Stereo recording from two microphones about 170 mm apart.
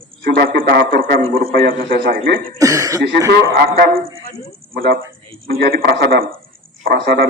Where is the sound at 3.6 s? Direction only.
65° right (ahead or behind).